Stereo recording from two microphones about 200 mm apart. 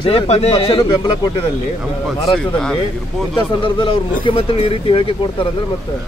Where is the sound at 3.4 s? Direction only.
25° left (ahead or behind).